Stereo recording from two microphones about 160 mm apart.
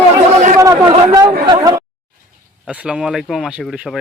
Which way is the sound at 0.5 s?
20° right (ahead or behind).